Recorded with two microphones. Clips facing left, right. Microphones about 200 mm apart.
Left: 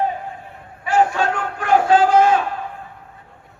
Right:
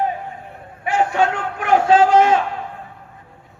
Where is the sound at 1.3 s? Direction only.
25° right (ahead or behind).